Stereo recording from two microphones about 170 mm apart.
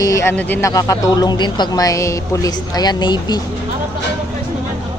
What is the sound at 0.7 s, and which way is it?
Speech, 20° left (ahead or behind).